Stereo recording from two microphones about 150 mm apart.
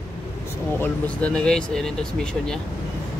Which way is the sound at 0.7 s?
10° left (ahead or behind).